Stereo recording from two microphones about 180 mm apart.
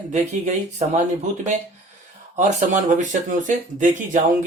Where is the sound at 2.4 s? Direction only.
45° right (ahead or behind).